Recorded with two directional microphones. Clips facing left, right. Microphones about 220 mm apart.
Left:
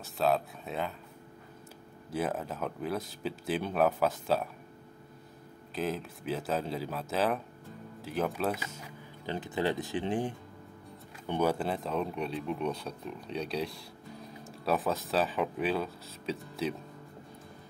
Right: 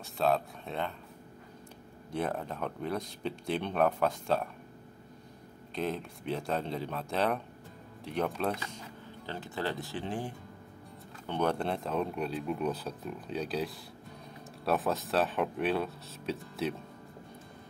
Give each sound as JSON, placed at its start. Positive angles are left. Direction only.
{"t": 0.0, "sound": "speech", "side_deg": 0}
{"t": 2.0, "sound": "speech", "side_deg": 5}
{"t": 5.8, "sound": "speech", "side_deg": 5}
{"t": 9.2, "sound": "speech", "side_deg": 15}
{"t": 11.2, "sound": "speech", "side_deg": 5}